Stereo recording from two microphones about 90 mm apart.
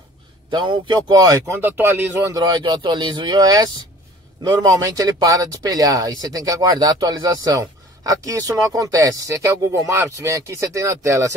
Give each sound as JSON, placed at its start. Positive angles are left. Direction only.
{"t": 0.5, "sound": "speech", "side_deg": -55}
{"t": 1.1, "sound": "speech", "side_deg": -40}
{"t": 1.5, "sound": "speech", "side_deg": -25}
{"t": 2.2, "sound": "speech", "side_deg": -45}
{"t": 2.6, "sound": "speech", "side_deg": -55}